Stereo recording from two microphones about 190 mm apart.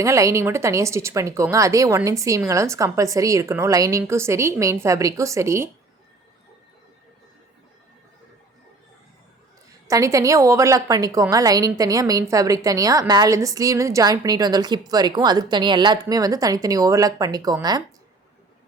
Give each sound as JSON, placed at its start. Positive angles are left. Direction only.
{"t": 0.0, "sound": "a woman's voice", "side_deg": -15}
{"t": 9.8, "sound": "a woman's voice", "side_deg": -15}